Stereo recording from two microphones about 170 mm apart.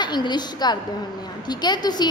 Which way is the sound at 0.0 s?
25° left (ahead or behind).